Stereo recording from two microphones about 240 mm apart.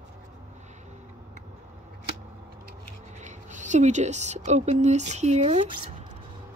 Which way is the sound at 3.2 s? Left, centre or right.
Right.